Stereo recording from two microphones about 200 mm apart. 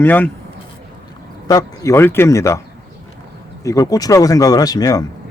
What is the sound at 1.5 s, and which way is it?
Speech, 20° left (ahead or behind).